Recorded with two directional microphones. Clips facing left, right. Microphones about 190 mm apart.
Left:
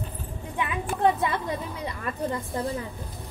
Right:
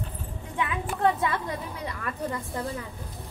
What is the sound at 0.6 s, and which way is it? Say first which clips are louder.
A woman's voice: left 1 dB; 20° left (ahead or behind).